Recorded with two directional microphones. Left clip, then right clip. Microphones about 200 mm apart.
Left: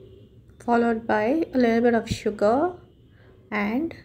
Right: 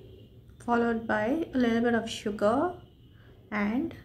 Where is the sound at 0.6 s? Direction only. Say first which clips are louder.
Left 5 dB; 15° left (ahead or behind).